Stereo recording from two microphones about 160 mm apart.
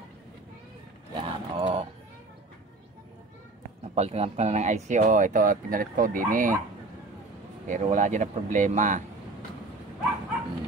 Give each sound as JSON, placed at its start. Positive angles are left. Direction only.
{"t": 1.1, "sound": "a sound", "side_deg": -30}
{"t": 3.9, "sound": "speech", "side_deg": -40}
{"t": 7.6, "sound": "speech", "side_deg": -50}